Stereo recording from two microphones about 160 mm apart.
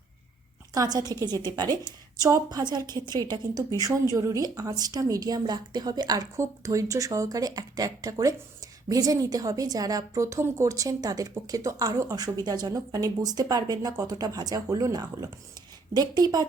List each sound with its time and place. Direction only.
0.7 s a woman's voice: 25° right (ahead or behind)